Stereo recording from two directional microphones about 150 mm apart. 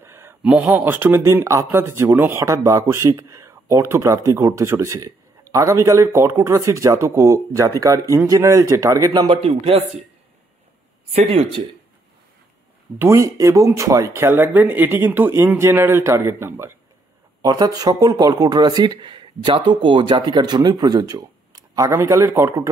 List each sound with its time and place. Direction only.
0.0 s speech: 15° right (ahead or behind)
9.4 s speech: 40° right (ahead or behind)
11.1 s speech: 40° right (ahead or behind)
13.0 s speech: 20° right (ahead or behind)